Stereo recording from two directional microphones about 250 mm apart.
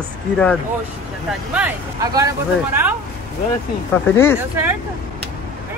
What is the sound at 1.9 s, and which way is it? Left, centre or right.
Speech, centre.